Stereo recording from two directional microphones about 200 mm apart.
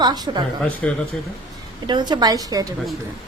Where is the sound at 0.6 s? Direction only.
5° left (ahead or behind).